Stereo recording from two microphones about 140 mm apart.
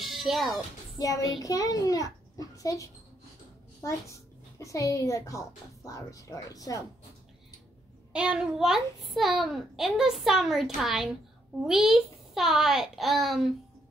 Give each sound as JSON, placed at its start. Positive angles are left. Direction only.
{"t": 0.0, "sound": "music", "side_deg": 0}
{"t": 0.9, "sound": "a child's voice", "side_deg": 25}
{"t": 8.1, "sound": "a child's voice", "side_deg": -5}